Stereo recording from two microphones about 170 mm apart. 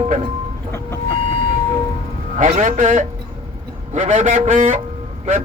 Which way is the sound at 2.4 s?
50° right (ahead or behind).